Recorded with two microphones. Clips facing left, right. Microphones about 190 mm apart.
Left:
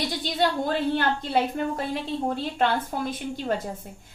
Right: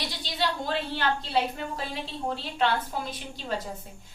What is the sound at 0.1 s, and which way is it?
A woman's voice, 50° left (ahead or behind).